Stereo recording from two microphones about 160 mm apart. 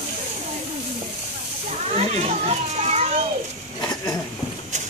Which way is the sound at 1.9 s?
40° right (ahead or behind).